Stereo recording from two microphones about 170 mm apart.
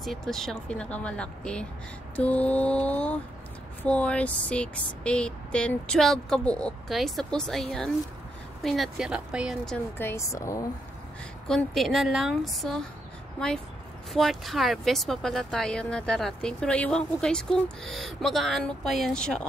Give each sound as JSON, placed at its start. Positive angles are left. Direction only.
{"t": 0.0, "sound": "speech", "side_deg": 0}
{"t": 2.1, "sound": "mantra", "side_deg": 10}
{"t": 3.8, "sound": "speech", "side_deg": 5}
{"t": 8.6, "sound": "speech", "side_deg": 0}
{"t": 9.9, "sound": "mantra", "side_deg": 15}
{"t": 11.4, "sound": "speech", "side_deg": 0}
{"t": 14.1, "sound": "speech", "side_deg": 0}